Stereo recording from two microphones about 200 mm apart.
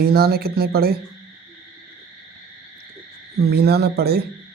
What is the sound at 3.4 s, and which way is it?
Speech, 55° right (ahead or behind).